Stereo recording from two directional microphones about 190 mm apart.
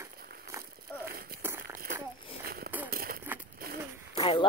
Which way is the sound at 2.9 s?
50° right (ahead or behind).